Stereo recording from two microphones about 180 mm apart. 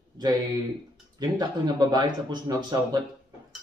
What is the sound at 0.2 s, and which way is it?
Speech, 25° right (ahead or behind).